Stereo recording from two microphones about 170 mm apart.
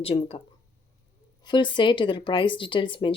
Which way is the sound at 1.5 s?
25° left (ahead or behind).